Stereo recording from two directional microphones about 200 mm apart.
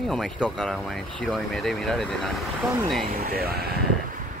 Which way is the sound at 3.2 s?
50° right (ahead or behind).